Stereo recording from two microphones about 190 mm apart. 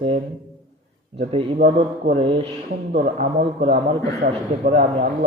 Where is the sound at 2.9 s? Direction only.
40° right (ahead or behind).